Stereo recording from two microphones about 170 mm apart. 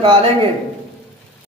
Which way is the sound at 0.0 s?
30° right (ahead or behind).